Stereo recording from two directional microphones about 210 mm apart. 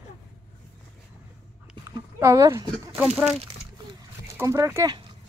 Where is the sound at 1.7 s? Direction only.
15° right (ahead or behind).